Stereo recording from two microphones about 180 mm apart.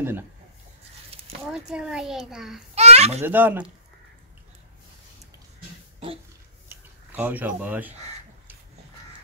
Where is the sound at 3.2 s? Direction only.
10° right (ahead or behind).